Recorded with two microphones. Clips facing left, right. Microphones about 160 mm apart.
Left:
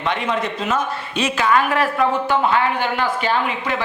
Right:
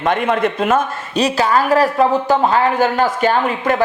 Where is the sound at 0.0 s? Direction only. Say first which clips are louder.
Right 6 dB; 50° right (ahead or behind).